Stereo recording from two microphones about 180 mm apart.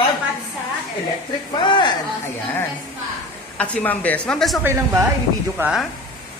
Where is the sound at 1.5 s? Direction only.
25° left (ahead or behind).